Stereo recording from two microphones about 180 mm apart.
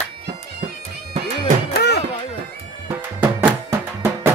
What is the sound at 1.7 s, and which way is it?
Music, 65° left (ahead or behind).